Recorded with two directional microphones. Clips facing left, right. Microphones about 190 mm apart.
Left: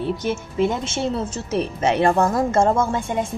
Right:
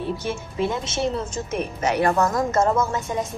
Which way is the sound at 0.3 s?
25° left (ahead or behind).